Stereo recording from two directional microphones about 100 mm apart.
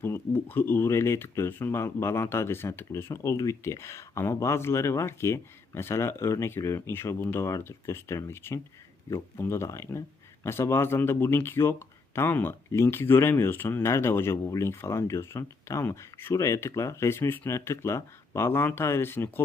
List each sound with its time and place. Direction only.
0.0 s speech: 20° left (ahead or behind)